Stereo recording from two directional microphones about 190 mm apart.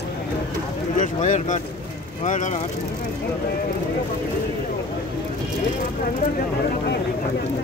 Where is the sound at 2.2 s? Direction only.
40° left (ahead or behind).